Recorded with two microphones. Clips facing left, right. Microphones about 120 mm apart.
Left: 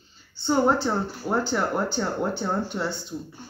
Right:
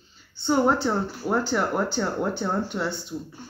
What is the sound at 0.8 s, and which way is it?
Speech, 5° right (ahead or behind).